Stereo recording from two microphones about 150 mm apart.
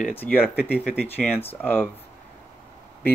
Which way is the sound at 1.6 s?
10° left (ahead or behind).